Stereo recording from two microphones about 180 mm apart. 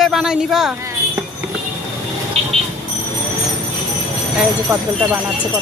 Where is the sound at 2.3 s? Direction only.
35° right (ahead or behind).